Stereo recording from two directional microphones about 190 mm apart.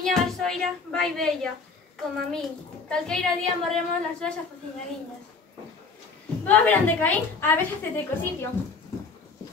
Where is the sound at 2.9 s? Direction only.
5° left (ahead or behind).